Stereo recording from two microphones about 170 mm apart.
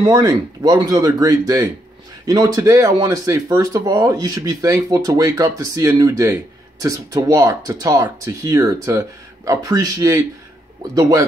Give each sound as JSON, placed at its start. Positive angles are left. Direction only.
{"t": 0.0, "sound": "speech", "side_deg": -25}